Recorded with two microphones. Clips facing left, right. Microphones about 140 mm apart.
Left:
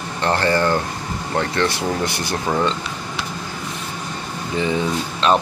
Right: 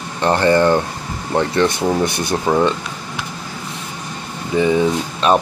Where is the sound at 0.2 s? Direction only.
20° right (ahead or behind).